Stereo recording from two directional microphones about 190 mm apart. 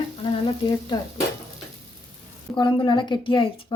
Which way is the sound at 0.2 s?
25° left (ahead or behind).